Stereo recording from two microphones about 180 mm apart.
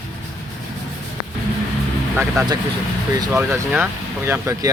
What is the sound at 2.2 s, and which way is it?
Speech, 15° right (ahead or behind).